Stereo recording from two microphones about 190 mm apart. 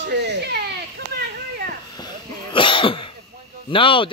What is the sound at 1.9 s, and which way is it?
Cough, 25° left (ahead or behind).